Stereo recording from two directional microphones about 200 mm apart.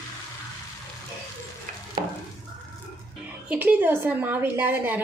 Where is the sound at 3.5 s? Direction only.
10° right (ahead or behind).